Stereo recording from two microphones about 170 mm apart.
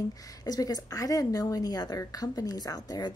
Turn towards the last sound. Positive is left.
turn(degrees=25)  # may be behind; listen again after turning